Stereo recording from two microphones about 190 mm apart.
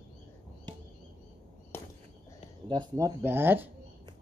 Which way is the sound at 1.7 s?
10° left (ahead or behind).